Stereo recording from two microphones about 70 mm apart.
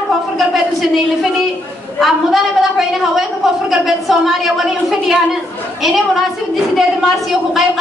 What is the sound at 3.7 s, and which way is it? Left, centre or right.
A woman's voice, centre.